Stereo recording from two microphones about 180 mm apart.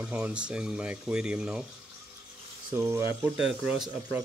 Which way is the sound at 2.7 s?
15° right (ahead or behind).